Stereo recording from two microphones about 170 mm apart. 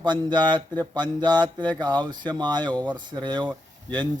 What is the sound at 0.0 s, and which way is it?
Speech, 25° right (ahead or behind).